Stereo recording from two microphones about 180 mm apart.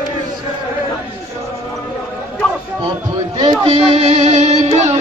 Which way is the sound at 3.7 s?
30° right (ahead or behind).